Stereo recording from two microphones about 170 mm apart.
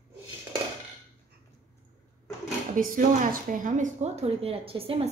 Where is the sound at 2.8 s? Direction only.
55° right (ahead or behind).